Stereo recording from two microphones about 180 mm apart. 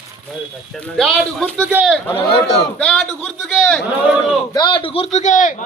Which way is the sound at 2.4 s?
70° left (ahead or behind).